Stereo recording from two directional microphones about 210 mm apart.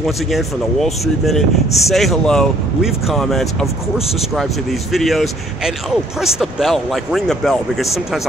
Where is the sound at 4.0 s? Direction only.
30° left (ahead or behind).